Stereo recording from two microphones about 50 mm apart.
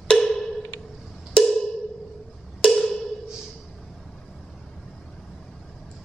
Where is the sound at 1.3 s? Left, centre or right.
Centre.